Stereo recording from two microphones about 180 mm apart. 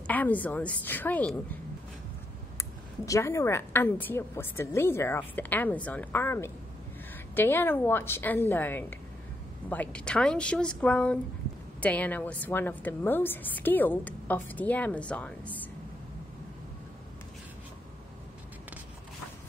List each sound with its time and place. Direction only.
0.0 s a woman's voice: 10° left (ahead or behind)
3.1 s a woman's voice: 15° left (ahead or behind)